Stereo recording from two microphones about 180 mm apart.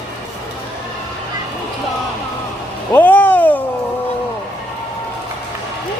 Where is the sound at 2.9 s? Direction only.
10° left (ahead or behind).